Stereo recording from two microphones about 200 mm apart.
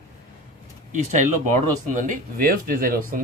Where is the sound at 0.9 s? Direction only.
40° right (ahead or behind).